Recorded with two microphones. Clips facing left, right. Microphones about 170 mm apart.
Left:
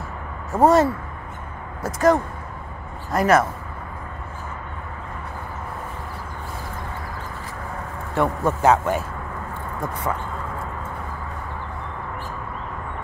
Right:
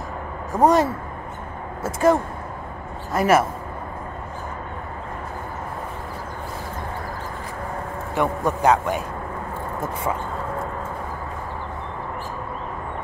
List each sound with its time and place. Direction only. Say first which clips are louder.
0.6 s a man's voice: left 1 dB; centre (ahead or behind)
1.8 s speech: even; 25° right (ahead or behind)
8.2 s a man's voice: left 1 dB; centre (ahead or behind)